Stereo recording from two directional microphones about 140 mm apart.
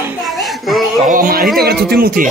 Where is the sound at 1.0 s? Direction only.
85° right.